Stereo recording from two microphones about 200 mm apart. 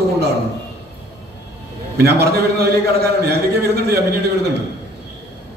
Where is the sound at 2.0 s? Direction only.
55° right (ahead or behind).